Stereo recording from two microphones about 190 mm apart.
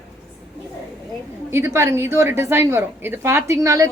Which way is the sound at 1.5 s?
15° right (ahead or behind).